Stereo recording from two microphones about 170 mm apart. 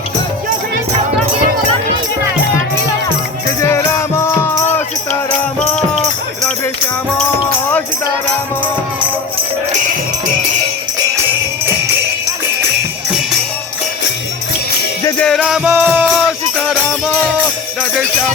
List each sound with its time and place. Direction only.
3.6 s music: 15° left (ahead or behind)
15.2 s music: 5° left (ahead or behind)